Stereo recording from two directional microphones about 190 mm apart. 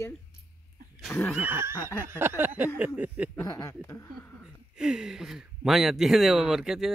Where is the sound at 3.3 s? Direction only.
15° left (ahead or behind).